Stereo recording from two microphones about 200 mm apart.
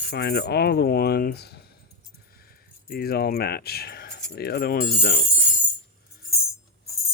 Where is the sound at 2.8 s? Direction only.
50° left (ahead or behind).